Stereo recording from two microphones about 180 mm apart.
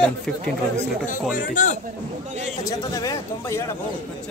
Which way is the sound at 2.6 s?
20° left (ahead or behind).